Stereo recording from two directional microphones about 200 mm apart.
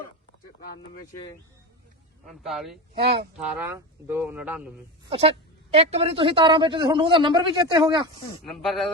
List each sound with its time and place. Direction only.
2.2 s speech: centre (ahead or behind)
2.9 s a man's voice: 25° right (ahead or behind)
3.3 s a man's voice: 10° right (ahead or behind)
5.7 s a man's voice: 30° right (ahead or behind)
8.4 s speech: centre (ahead or behind)